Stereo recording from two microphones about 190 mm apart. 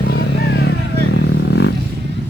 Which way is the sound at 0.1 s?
60° left (ahead or behind).